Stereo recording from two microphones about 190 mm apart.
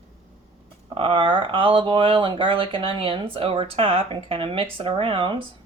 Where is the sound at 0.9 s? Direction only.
25° right (ahead or behind).